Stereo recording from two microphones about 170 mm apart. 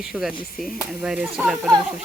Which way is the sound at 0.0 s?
5° right (ahead or behind).